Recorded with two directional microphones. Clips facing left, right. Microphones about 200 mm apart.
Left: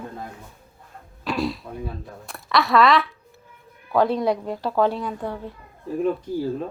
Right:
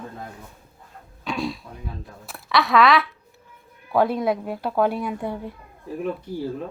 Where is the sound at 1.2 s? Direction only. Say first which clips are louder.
Left 2 dB; centre (ahead or behind).